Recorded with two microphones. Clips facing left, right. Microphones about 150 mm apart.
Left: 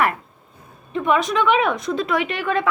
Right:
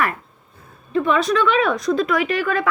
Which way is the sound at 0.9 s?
15° left (ahead or behind).